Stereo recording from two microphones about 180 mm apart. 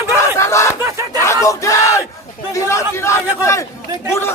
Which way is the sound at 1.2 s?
15° left (ahead or behind).